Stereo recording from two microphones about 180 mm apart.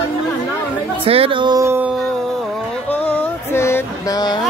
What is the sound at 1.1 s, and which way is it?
Speech, 30° right (ahead or behind).